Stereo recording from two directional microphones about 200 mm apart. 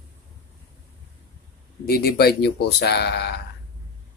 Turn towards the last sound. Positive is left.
turn(degrees=55)  # may be behind; listen again after turning